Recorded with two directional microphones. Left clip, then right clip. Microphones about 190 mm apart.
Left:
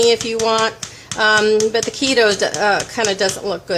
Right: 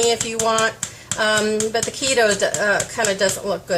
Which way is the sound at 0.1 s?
35° left (ahead or behind).